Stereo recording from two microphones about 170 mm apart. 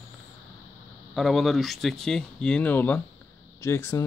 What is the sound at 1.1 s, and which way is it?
Speech, centre (ahead or behind).